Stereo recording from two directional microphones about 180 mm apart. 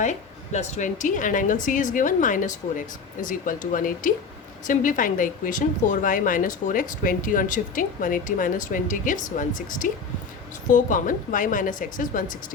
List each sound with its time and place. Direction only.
0.0 s speech: 40° left (ahead or behind)